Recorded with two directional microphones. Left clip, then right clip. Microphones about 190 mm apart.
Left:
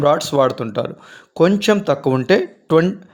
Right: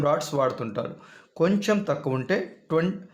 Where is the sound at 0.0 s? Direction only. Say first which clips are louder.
Left 9 dB; 35° left (ahead or behind).